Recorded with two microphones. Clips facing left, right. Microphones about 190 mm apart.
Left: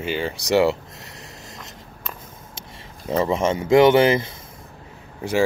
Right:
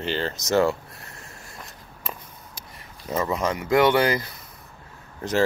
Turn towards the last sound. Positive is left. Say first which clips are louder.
# left 2 dB
turn(degrees=10)  # may be behind; listen again after turning